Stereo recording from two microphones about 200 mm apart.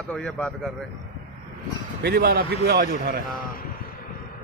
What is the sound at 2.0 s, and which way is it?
A man's voice, 55° right (ahead or behind).